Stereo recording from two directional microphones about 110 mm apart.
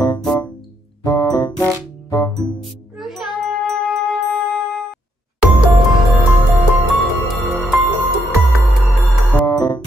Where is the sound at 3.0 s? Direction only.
Centre (ahead or behind).